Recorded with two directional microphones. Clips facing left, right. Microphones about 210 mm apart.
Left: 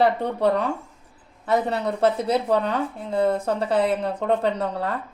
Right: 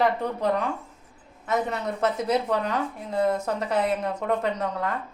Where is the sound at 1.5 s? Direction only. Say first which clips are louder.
Left 4 dB; 35° left (ahead or behind).